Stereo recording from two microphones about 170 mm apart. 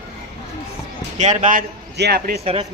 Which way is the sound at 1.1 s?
45° right (ahead or behind).